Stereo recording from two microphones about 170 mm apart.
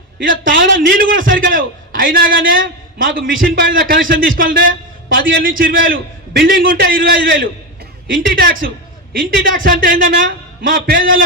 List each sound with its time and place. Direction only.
0.2 s a man's voice: 55° right (ahead or behind)
5.0 s a sound: 55° right (ahead or behind)
5.3 s a man's voice: 55° right (ahead or behind)